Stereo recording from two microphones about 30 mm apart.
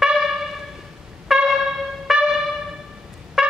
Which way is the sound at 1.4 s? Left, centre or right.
Centre.